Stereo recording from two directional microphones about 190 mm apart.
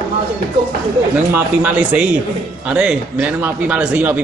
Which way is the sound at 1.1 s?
10° right (ahead or behind).